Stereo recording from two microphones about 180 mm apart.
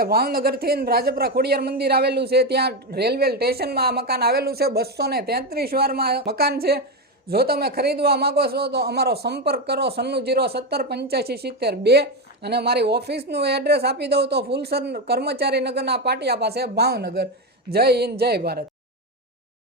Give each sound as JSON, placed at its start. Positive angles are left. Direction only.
{"t": 0.0, "sound": "a man's voice", "side_deg": -55}